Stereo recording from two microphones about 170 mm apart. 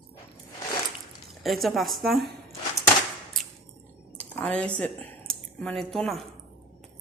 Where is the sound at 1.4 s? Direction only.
Centre (ahead or behind).